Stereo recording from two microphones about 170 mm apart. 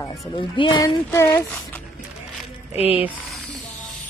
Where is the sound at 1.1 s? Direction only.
15° left (ahead or behind).